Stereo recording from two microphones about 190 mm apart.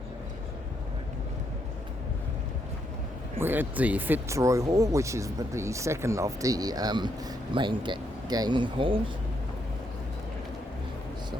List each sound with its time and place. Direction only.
3.3 s speech: 10° right (ahead or behind); by 9.0 s 25° right (ahead or behind)